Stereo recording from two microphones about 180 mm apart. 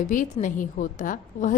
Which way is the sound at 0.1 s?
45° left (ahead or behind).